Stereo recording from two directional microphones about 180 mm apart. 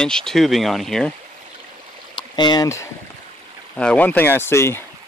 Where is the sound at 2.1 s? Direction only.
25° left (ahead or behind).